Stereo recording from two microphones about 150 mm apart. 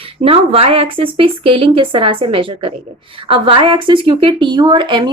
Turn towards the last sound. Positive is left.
turn(degrees=-30)  # may be behind; listen again after turning